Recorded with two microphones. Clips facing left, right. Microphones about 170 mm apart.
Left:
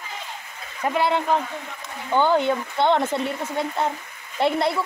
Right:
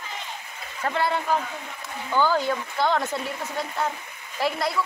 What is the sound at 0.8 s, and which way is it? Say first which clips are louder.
Speech: left 3 dB; 15° left (ahead or behind).